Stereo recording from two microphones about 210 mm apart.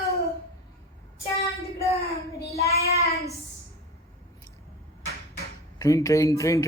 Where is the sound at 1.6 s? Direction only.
15° left (ahead or behind).